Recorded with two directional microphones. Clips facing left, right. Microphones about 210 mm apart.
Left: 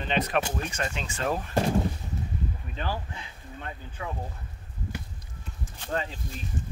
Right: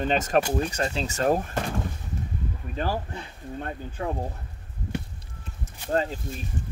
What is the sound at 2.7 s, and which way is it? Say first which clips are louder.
Speech: right 6 dB; 45° right (ahead or behind).